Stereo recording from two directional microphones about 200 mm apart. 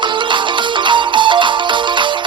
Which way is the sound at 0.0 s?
25° right (ahead or behind).